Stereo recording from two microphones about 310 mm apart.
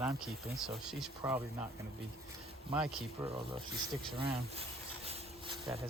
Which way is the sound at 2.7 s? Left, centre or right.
Centre.